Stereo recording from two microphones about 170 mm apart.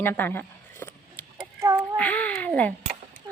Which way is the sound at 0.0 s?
10° left (ahead or behind).